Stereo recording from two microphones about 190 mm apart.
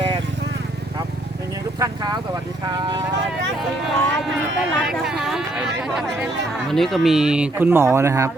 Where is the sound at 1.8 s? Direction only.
20° right (ahead or behind).